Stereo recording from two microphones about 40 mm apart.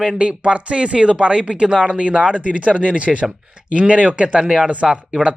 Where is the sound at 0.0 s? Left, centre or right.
Right.